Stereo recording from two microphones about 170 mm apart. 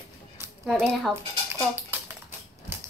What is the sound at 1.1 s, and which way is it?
Speech, 15° right (ahead or behind).